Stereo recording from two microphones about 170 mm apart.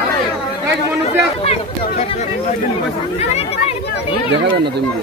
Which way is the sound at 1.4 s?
35° left (ahead or behind).